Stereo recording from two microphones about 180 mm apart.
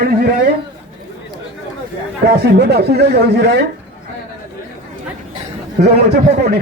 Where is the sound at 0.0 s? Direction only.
55° right (ahead or behind).